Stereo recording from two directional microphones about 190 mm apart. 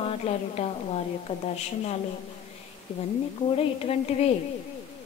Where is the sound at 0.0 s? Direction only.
35° left (ahead or behind).